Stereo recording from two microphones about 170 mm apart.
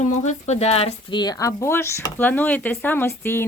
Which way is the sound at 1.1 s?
20° left (ahead or behind).